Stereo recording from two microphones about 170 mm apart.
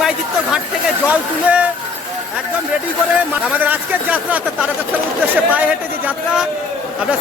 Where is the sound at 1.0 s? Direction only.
5° right (ahead or behind).